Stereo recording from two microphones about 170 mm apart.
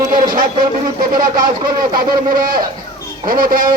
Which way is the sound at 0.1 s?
55° right (ahead or behind).